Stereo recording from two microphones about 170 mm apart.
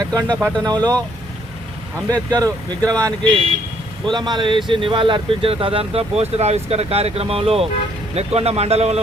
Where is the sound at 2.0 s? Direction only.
20° right (ahead or behind).